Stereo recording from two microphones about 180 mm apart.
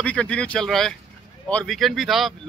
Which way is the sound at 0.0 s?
5° left (ahead or behind).